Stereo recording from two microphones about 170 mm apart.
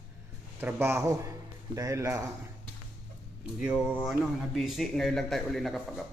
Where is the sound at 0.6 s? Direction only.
10° right (ahead or behind).